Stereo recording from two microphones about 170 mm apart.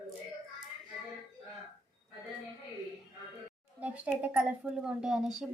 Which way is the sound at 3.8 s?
10° right (ahead or behind).